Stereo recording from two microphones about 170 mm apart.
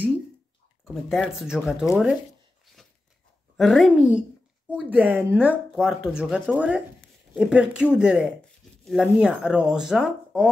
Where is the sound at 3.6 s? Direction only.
Centre (ahead or behind).